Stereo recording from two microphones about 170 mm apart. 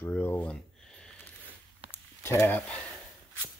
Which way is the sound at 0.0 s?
10° left (ahead or behind).